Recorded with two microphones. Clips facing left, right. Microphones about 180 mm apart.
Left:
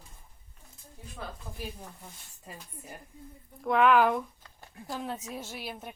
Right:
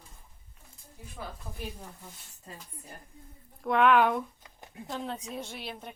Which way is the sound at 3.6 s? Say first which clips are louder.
Even; centre (ahead or behind).